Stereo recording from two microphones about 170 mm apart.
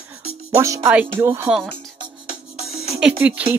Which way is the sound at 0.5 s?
15° right (ahead or behind).